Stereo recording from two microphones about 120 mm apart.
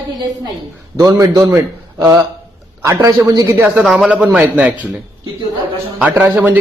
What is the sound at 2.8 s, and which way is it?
Speech, 25° right (ahead or behind).